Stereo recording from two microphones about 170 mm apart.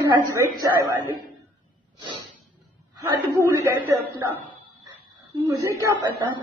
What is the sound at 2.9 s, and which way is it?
Speech, 15° right (ahead or behind).